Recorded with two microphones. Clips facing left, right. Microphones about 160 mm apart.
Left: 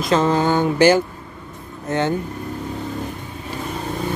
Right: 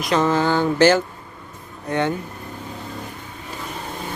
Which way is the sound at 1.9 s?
25° left (ahead or behind).